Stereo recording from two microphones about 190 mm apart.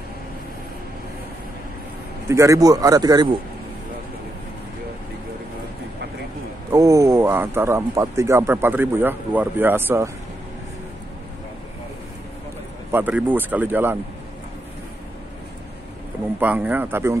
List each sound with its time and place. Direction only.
2.2 s speech: 15° right (ahead or behind)
6.7 s speech: 15° right (ahead or behind)
12.9 s speech: 10° right (ahead or behind)
16.3 s speech: 10° right (ahead or behind)